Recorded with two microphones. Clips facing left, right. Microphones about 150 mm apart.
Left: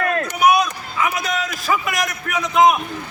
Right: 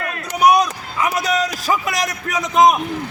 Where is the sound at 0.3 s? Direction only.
40° right (ahead or behind).